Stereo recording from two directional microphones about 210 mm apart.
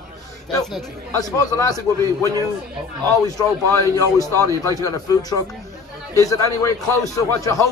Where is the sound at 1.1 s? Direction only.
15° left (ahead or behind).